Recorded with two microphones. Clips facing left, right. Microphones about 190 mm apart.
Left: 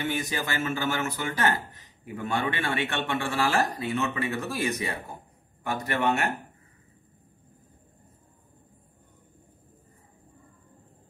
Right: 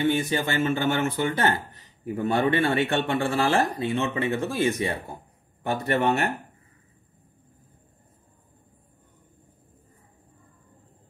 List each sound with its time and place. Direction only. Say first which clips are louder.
0.0 s speech: right 6 dB; 30° right (ahead or behind)